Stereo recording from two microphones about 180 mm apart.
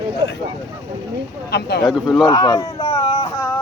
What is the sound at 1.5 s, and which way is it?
Speech, 65° left (ahead or behind).